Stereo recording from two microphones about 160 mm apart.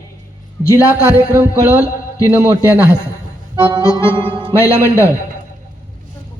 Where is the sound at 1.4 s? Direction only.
10° right (ahead or behind).